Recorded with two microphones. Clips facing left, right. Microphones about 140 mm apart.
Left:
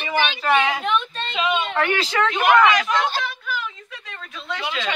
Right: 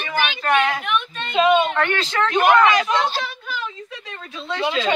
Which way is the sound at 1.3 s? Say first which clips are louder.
Right 8 dB; 45° right (ahead or behind).